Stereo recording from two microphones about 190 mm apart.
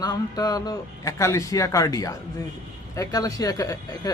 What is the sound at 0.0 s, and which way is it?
Speech, 20° left (ahead or behind).